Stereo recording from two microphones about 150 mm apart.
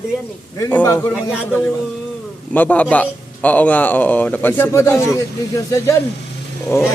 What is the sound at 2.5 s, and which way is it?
A man's voice, 10° left (ahead or behind).